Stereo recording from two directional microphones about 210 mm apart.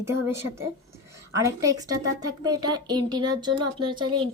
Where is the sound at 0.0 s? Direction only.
10° right (ahead or behind).